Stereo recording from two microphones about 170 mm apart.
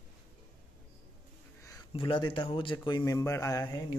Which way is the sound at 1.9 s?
30° left (ahead or behind).